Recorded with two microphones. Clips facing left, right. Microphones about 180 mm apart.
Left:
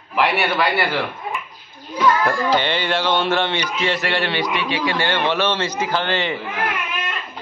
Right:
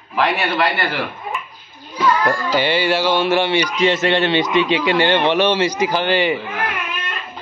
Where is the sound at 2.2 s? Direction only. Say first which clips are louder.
Right 1 dB; 5° right (ahead or behind).